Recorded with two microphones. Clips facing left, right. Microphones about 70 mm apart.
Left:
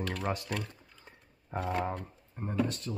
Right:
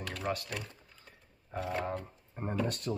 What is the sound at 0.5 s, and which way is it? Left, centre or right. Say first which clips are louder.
Speech: left 4 dB; centre.